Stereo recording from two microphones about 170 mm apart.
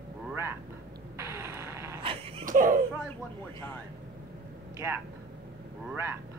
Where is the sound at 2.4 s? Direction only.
55° right (ahead or behind).